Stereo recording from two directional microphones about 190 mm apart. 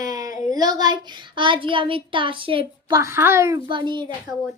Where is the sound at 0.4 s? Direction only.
20° right (ahead or behind).